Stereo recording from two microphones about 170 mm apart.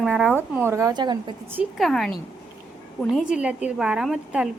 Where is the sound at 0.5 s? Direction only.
15° right (ahead or behind).